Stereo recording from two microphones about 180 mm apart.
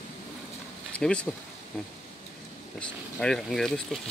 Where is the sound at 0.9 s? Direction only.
5° left (ahead or behind).